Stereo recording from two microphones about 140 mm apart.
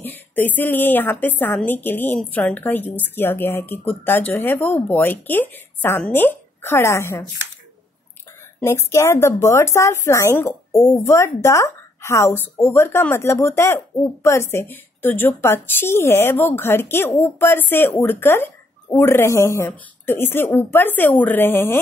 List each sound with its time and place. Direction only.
0.0 s a woman's voice: 15° left (ahead or behind)
8.5 s a woman's voice: 20° left (ahead or behind)